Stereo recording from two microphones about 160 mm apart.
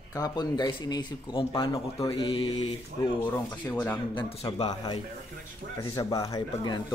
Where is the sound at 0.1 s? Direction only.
25° left (ahead or behind).